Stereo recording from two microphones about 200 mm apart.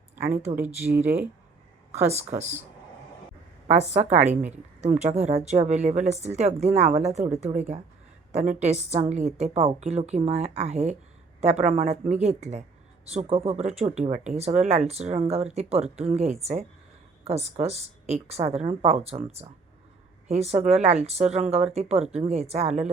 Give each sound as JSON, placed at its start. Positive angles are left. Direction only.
{"t": 0.8, "sound": "speech", "side_deg": -10}
{"t": 2.0, "sound": "speech", "side_deg": -35}
{"t": 3.7, "sound": "a woman's voice", "side_deg": -35}